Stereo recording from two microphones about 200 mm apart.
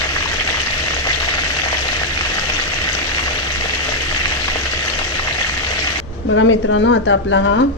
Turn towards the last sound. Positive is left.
turn(degrees=70)  # may be behind; listen again after turning